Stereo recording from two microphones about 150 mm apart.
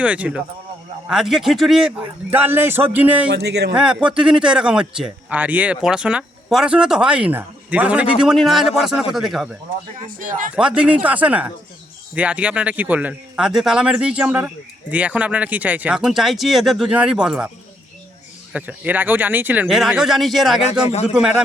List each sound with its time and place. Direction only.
0.0 s speech: 10° right (ahead or behind)
3.3 s speech: 90° right
3.8 s a man's voice: 5° right (ahead or behind)
10.1 s speech: 65° right (ahead or behind)
10.5 s speech: 5° right (ahead or behind)
18.5 s a man's voice: 10° right (ahead or behind)